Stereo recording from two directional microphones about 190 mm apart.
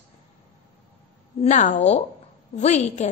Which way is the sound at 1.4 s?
40° left (ahead or behind).